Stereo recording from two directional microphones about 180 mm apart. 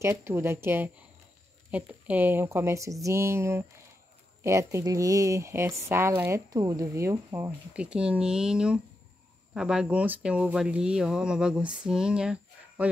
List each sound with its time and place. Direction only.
0.0 s speech: 15° right (ahead or behind)